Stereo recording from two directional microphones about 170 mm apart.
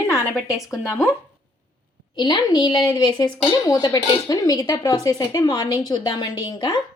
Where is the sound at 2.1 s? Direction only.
25° left (ahead or behind).